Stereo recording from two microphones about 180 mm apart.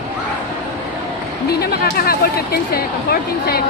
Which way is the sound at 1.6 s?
60° left (ahead or behind).